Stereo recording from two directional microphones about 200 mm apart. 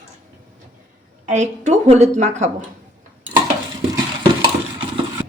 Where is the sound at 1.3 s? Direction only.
35° right (ahead or behind).